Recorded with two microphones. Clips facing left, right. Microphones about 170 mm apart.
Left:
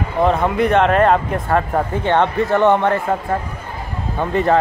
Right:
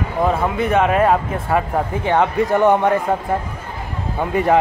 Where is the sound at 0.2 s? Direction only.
5° right (ahead or behind).